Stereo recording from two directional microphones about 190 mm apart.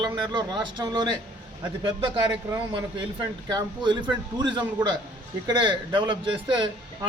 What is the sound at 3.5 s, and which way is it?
Speech, 20° right (ahead or behind).